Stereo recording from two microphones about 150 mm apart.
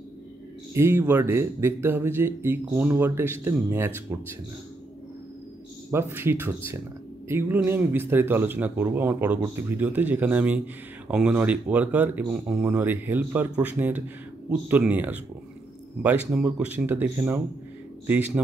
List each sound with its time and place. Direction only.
0.7 s speech: 15° right (ahead or behind)
5.9 s speech: 15° right (ahead or behind)